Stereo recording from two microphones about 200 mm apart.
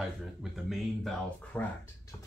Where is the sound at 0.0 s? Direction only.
Centre (ahead or behind).